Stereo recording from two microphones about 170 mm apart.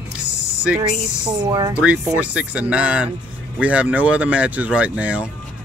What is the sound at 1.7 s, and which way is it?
Speech, 5° right (ahead or behind).